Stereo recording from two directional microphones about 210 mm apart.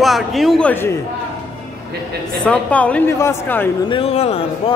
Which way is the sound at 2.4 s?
5° left (ahead or behind).